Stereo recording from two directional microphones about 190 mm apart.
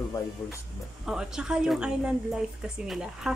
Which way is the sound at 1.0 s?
5° right (ahead or behind).